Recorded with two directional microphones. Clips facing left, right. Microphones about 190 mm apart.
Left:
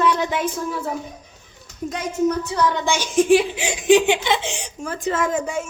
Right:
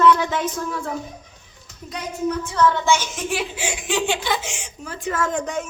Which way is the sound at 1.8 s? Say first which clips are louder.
Left 5 dB; 45° left (ahead or behind).